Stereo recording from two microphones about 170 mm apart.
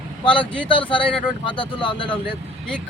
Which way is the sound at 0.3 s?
30° left (ahead or behind).